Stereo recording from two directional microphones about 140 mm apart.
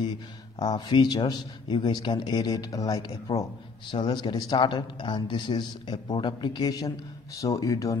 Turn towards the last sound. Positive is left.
turn(degrees=25)  # may be behind; listen again after turning